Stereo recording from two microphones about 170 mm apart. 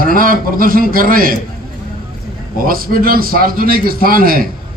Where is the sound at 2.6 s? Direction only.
60° right (ahead or behind).